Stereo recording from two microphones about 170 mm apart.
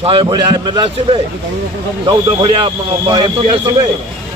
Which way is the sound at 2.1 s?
25° right (ahead or behind).